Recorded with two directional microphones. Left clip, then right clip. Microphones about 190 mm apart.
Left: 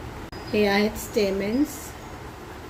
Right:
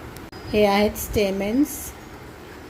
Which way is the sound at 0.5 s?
30° right (ahead or behind).